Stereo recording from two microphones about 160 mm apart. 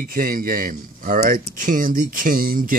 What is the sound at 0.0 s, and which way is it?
Speech, 60° right (ahead or behind).